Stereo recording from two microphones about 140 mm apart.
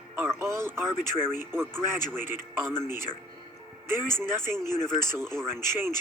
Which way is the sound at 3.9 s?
15° right (ahead or behind).